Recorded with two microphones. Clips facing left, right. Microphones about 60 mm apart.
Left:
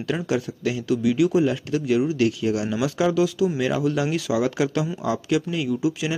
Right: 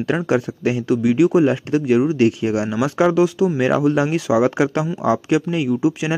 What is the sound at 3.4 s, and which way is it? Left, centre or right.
Speech, right.